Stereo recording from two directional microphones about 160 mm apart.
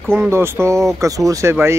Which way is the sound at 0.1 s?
15° right (ahead or behind).